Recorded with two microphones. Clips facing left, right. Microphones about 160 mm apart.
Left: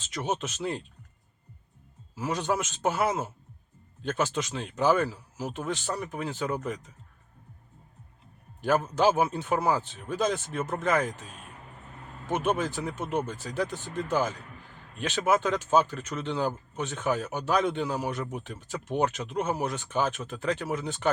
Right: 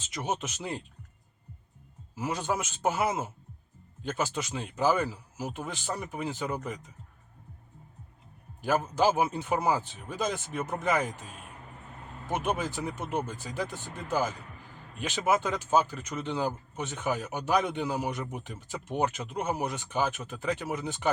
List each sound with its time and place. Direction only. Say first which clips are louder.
0.0 s speech: left 2 dB; 15° right (ahead or behind)
2.1 s speech: left 2 dB; 10° right (ahead or behind)
8.6 s speech: left 2 dB; 10° right (ahead or behind)